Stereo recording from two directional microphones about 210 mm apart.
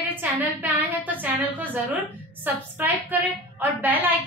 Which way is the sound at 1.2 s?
10° right (ahead or behind).